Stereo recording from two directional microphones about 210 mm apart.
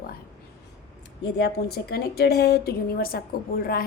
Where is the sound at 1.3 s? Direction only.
50° left (ahead or behind).